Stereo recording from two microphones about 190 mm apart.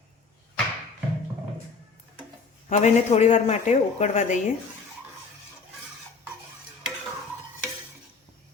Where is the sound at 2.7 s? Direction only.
35° left (ahead or behind).